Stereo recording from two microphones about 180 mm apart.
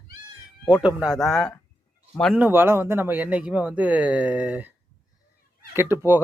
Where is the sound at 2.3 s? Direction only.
10° right (ahead or behind).